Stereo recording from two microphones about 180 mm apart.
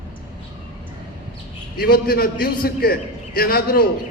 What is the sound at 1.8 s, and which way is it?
A man's voice, 55° left (ahead or behind).